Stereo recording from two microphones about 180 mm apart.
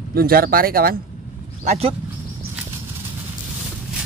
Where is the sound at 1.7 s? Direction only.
35° right (ahead or behind).